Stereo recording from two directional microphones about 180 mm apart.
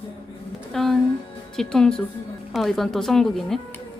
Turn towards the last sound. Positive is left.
turn(degrees=0)  # may be behind; listen again after turning